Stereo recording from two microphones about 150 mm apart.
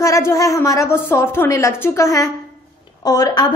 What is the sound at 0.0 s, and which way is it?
A woman's voice, 20° left (ahead or behind).